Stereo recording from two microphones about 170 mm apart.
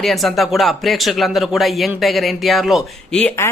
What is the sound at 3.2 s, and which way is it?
Speech, 15° left (ahead or behind).